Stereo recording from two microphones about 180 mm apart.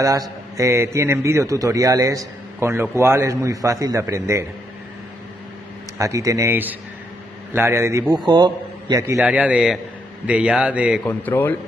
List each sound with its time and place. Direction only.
0.0 s a man's voice: 20° right (ahead or behind)
5.9 s a man's voice: 20° right (ahead or behind)
9.0 s a man's voice: 10° right (ahead or behind)
11.1 s speech: 10° left (ahead or behind)